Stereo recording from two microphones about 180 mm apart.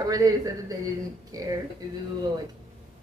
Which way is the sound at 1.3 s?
20° right (ahead or behind).